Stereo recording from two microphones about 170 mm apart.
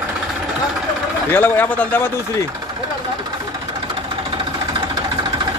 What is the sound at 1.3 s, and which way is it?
Speech, 10° left (ahead or behind).